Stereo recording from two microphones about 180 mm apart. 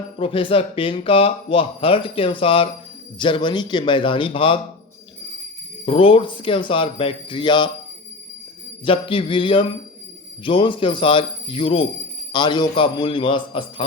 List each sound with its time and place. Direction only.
0.2 s speech: 30° left (ahead or behind)
5.8 s speech: 30° left (ahead or behind)
8.8 s speech: 30° left (ahead or behind)